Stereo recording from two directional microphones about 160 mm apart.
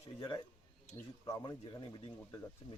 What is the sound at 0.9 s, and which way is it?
A man's voice, 20° left (ahead or behind).